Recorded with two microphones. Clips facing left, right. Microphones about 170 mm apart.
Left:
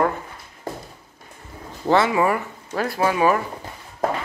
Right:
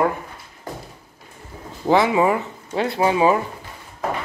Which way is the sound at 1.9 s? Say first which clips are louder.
Right 2 dB; 20° right (ahead or behind).